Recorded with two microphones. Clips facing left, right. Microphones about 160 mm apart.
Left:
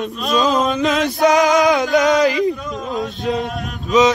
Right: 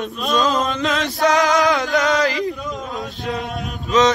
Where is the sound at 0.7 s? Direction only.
20° left (ahead or behind).